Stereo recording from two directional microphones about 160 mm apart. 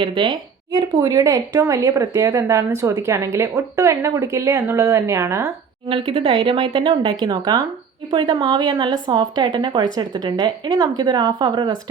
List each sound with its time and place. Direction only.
0.0 s speech: 30° right (ahead or behind)
5.9 s speech: 35° right (ahead or behind)